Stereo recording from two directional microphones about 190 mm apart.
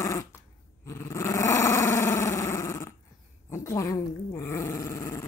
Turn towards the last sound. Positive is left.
turn(degrees=15)  # may be behind; listen again after turning